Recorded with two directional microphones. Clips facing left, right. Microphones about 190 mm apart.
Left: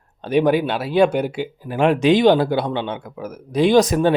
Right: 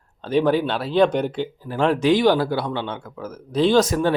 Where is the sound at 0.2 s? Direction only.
15° left (ahead or behind).